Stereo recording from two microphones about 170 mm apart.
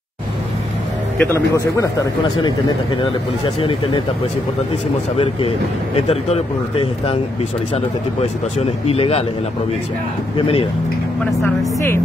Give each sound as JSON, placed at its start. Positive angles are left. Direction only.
{"t": 1.1, "sound": "speech", "side_deg": 10}
{"t": 3.0, "sound": "speech", "side_deg": 30}
{"t": 5.1, "sound": "speech", "side_deg": 35}
{"t": 10.3, "sound": "speech", "side_deg": 35}
{"t": 11.4, "sound": "speech", "side_deg": 15}